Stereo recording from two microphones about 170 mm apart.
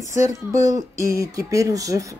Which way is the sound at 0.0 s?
20° right (ahead or behind).